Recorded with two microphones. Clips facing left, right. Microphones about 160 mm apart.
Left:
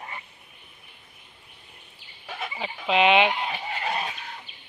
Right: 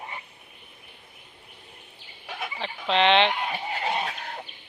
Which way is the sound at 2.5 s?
5° left (ahead or behind).